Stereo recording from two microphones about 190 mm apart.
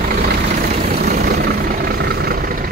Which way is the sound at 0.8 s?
50° right (ahead or behind).